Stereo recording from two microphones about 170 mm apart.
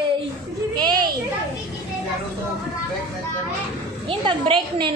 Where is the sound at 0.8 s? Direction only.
25° right (ahead or behind).